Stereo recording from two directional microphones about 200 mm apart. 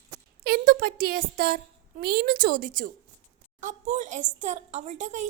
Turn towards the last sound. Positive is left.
turn(degrees=-35)  # may be behind; listen again after turning